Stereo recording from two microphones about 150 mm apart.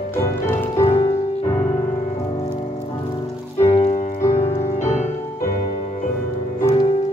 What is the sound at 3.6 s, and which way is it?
Music, 40° left (ahead or behind).